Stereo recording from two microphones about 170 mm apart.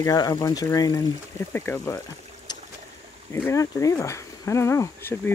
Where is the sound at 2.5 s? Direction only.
25° left (ahead or behind).